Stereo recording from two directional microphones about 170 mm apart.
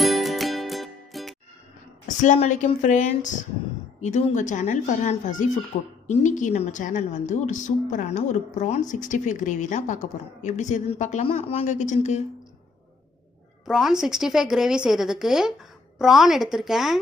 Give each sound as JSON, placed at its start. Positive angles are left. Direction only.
{"t": 0.0, "sound": "music", "side_deg": 0}
{"t": 2.0, "sound": "a woman's voice", "side_deg": 45}
{"t": 13.7, "sound": "speech", "side_deg": 0}